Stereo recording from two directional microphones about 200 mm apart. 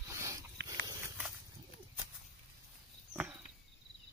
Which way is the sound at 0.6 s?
55° right (ahead or behind).